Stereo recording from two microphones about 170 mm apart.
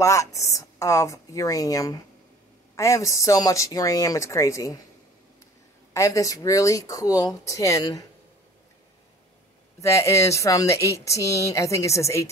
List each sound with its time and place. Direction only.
0.0 s speech: 20° left (ahead or behind)
5.9 s speech: 20° left (ahead or behind)
9.8 s speech: 15° left (ahead or behind)